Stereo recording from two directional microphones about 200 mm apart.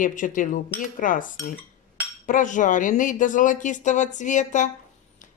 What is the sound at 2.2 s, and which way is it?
Speech, 40° left (ahead or behind).